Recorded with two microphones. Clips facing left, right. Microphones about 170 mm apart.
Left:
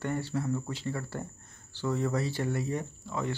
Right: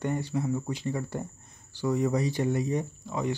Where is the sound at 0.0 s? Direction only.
15° right (ahead or behind).